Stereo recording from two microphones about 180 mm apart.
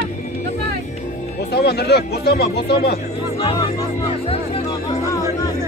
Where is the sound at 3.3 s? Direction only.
25° left (ahead or behind).